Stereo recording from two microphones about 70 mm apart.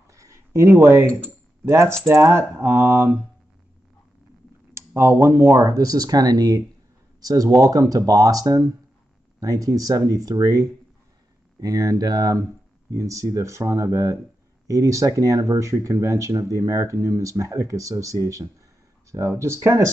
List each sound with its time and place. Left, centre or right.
0.0 s a sound: right
1.7 s speech: right
4.7 s speech: right